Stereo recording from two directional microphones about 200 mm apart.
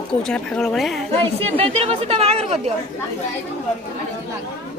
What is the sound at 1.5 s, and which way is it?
Speech, 30° right (ahead or behind).